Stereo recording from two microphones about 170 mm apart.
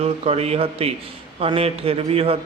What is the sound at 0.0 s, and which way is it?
Mantra, 35° right (ahead or behind).